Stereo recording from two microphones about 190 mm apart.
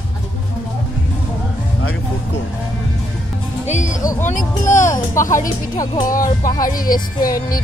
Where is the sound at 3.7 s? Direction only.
40° left (ahead or behind).